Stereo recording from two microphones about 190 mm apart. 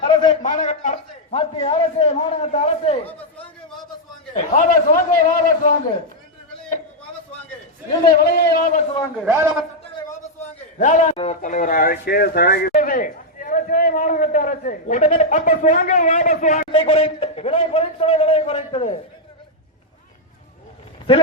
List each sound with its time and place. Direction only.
0.1 s a sound: 25° left (ahead or behind)
0.4 s a man's voice: 40° left (ahead or behind)
4.5 s a man's voice: 45° left (ahead or behind)
8.1 s a man's voice: 55° left (ahead or behind)
9.2 s a man's voice: 10° right (ahead or behind)
10.4 s a sound: 40° left (ahead or behind)
11.4 s a man's voice: 45° left (ahead or behind)
16.7 s a man's voice: 30° left (ahead or behind)